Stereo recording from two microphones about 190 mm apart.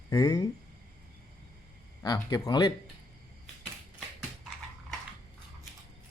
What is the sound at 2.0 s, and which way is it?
Speech, 20° left (ahead or behind).